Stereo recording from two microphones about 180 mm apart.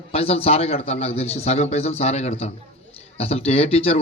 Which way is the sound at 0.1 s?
35° left (ahead or behind).